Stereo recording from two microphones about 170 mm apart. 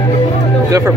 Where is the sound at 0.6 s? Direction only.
20° right (ahead or behind).